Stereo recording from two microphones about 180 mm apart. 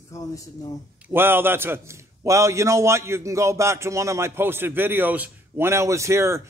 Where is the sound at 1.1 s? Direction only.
10° right (ahead or behind).